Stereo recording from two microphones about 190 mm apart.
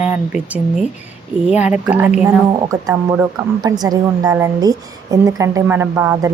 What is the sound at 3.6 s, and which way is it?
A woman's voice, 20° right (ahead or behind).